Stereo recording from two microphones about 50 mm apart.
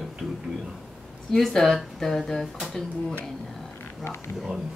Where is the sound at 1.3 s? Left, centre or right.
Centre.